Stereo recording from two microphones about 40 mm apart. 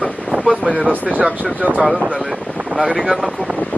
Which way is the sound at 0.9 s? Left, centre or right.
Right.